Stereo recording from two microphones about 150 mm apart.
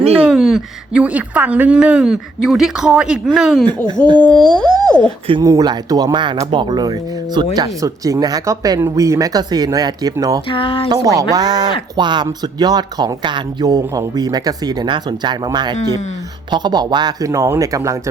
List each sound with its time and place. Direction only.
0.3 s a woman's voice: 5° right (ahead or behind)
5.4 s speech: 25° right (ahead or behind)
10.5 s speech: 35° left (ahead or behind)
10.8 s speech: 25° right (ahead or behind)